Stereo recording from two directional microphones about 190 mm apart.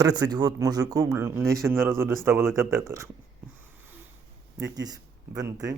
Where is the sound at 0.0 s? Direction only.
20° right (ahead or behind).